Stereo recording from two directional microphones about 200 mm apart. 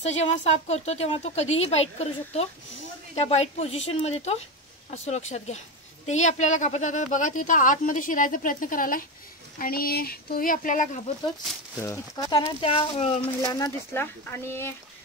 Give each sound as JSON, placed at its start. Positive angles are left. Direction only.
{"t": 0.0, "sound": "speech", "side_deg": 30}
{"t": 11.8, "sound": "speech", "side_deg": 15}
{"t": 13.4, "sound": "speech", "side_deg": 20}